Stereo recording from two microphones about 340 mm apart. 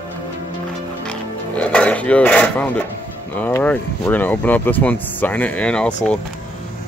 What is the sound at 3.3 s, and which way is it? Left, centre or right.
Speech, centre.